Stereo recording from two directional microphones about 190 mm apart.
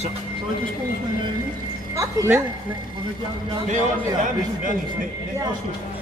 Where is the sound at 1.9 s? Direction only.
15° right (ahead or behind).